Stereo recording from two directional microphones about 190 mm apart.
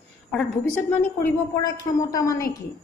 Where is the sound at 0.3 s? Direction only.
5° left (ahead or behind).